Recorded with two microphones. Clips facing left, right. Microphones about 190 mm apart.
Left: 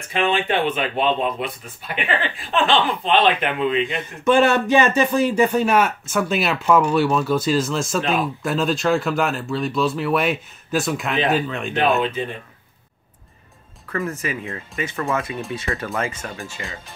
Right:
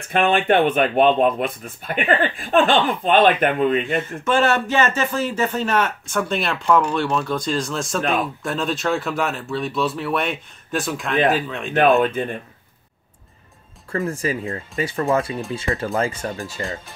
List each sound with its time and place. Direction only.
0.1 s speech: 55° right (ahead or behind)
4.2 s speech: 15° left (ahead or behind); by 11.7 s centre (ahead or behind)
12.0 s speech: 50° right (ahead or behind)
13.9 s speech: 30° right (ahead or behind)